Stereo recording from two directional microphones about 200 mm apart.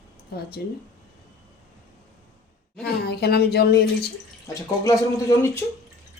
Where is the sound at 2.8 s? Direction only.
55° left (ahead or behind).